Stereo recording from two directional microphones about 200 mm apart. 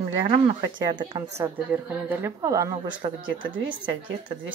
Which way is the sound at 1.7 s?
10° right (ahead or behind).